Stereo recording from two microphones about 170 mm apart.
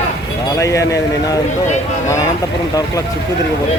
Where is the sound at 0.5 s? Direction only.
20° left (ahead or behind).